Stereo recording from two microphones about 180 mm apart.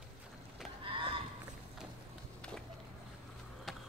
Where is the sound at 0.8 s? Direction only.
30° right (ahead or behind).